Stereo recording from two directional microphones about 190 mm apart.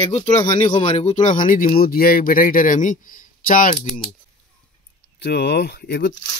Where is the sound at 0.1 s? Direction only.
35° left (ahead or behind).